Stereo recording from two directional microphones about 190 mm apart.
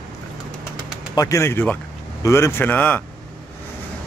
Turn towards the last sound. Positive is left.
turn(degrees=10)  # may be behind; listen again after turning